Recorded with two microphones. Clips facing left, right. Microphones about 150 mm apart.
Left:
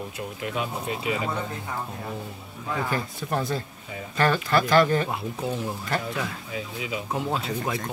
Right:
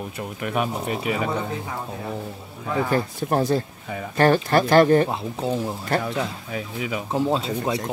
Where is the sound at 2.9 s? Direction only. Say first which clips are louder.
Right 6 dB; 40° right (ahead or behind).